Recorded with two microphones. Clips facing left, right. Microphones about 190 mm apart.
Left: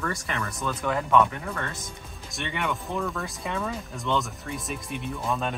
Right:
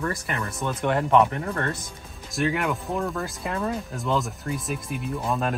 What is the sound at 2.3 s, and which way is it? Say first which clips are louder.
Speech: right 6 dB; centre (ahead or behind).